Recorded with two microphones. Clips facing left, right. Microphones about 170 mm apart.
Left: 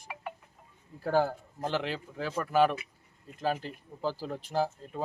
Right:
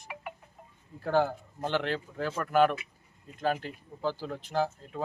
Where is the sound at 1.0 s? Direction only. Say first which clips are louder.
Even; 5° left (ahead or behind).